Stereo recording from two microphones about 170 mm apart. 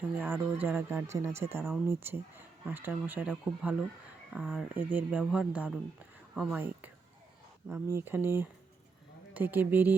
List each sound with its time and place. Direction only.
0.1 s speech: 10° right (ahead or behind)
6.3 s a sound: 5° right (ahead or behind)
7.9 s speech: 10° right (ahead or behind)